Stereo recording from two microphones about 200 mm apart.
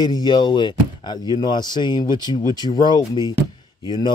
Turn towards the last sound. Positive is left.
turn(degrees=20)  # may be behind; listen again after turning